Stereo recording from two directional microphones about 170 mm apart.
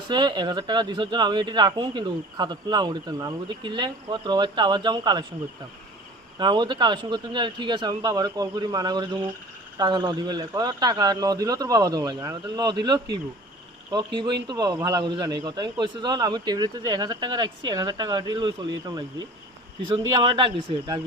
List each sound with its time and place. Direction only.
0.1 s speech: 25° right (ahead or behind)
6.4 s speech: 25° right (ahead or behind)
20.0 s speech: 25° right (ahead or behind)